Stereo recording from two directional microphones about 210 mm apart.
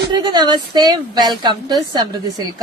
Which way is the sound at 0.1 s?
20° right (ahead or behind).